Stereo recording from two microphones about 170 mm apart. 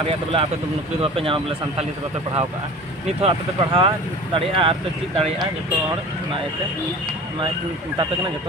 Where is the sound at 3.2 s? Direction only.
35° right (ahead or behind).